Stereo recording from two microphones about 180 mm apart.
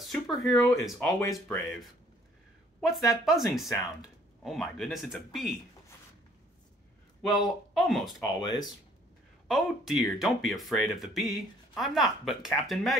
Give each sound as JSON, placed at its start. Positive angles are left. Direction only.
{"t": 0.1, "sound": "speech", "side_deg": 0}
{"t": 0.5, "sound": "speech", "side_deg": 20}
{"t": 2.9, "sound": "speech", "side_deg": 0}
{"t": 7.7, "sound": "speech", "side_deg": 0}
{"t": 8.2, "sound": "speech", "side_deg": 25}
{"t": 9.5, "sound": "speech", "side_deg": 0}